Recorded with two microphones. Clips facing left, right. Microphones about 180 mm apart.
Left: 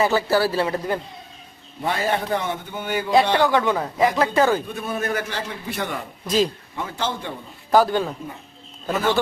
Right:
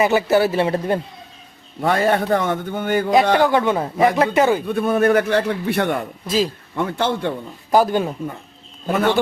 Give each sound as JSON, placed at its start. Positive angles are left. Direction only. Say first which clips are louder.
{"t": 0.0, "sound": "a man's voice", "louder": "right 3 dB", "side_deg": -20}
{"t": 1.8, "sound": "a man's voice", "louder": "right 6 dB", "side_deg": -55}
{"t": 3.4, "sound": "a man's voice", "louder": "right 3 dB", "side_deg": -20}
{"t": 4.6, "sound": "a man's voice", "louder": "right 10 dB", "side_deg": -60}
{"t": 6.2, "sound": "speech", "louder": "even", "side_deg": -5}
{"t": 6.7, "sound": "a man's voice", "louder": "right 7 dB", "side_deg": -55}
{"t": 7.7, "sound": "speech", "louder": "right 1 dB", "side_deg": -15}
{"t": 8.9, "sound": "a man's voice", "louder": "right 4 dB", "side_deg": -60}